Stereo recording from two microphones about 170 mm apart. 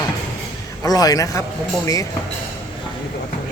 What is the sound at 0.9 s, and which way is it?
Speech, 20° left (ahead or behind).